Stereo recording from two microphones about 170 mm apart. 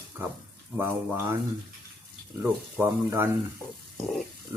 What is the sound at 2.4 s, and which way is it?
Speech, 10° right (ahead or behind).